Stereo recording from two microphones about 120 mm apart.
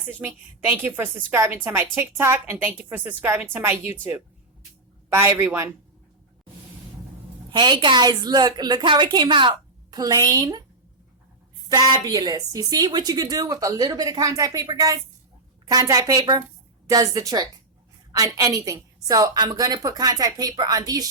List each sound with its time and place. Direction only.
0.1 s a woman's voice: 15° right (ahead or behind)
7.5 s a woman's voice: 40° right (ahead or behind)
11.7 s a woman's voice: 35° right (ahead or behind)